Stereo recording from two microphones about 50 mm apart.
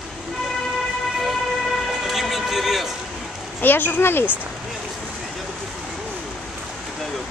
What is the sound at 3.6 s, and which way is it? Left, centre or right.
Speech, left.